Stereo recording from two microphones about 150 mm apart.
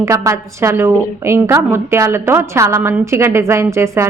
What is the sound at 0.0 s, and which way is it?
A woman's voice, 20° right (ahead or behind).